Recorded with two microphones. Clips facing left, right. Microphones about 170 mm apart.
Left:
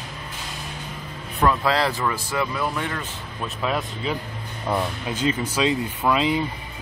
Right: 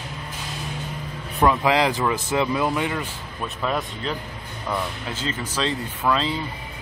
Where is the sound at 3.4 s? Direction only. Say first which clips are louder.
Even; centre (ahead or behind).